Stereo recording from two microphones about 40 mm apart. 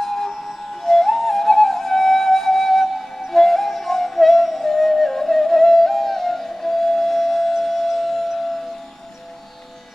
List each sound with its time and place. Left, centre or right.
0.0 s siren: centre
0.3 s siren: centre
0.8 s flute: centre
3.3 s music: centre
7.5 s a sound: centre